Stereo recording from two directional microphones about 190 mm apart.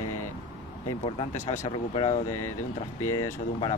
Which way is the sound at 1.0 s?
35° left (ahead or behind).